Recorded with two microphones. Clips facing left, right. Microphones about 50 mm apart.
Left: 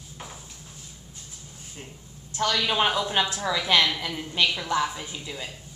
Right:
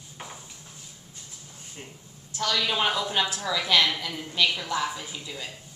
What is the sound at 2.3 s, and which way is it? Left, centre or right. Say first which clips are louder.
Speech: left 2 dB; left.